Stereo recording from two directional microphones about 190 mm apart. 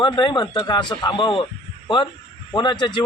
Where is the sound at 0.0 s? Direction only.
25° left (ahead or behind).